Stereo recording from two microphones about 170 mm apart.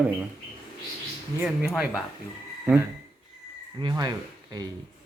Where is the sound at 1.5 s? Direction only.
5° right (ahead or behind).